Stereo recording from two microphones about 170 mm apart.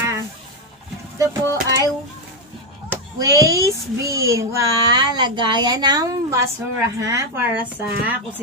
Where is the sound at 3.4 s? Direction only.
20° right (ahead or behind).